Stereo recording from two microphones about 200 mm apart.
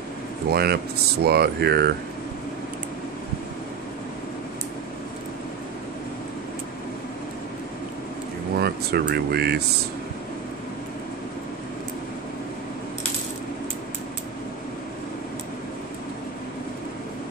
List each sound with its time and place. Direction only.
0.5 s speech: 55° right (ahead or behind)
8.5 s speech: 55° right (ahead or behind)